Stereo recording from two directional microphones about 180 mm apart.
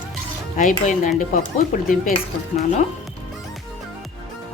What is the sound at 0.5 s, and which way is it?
Speech, 45° left (ahead or behind).